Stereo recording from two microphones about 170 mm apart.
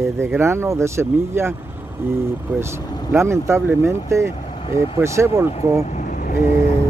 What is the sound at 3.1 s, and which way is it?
Speech, 15° right (ahead or behind).